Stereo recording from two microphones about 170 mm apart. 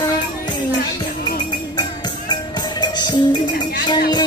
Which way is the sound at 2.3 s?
25° left (ahead or behind).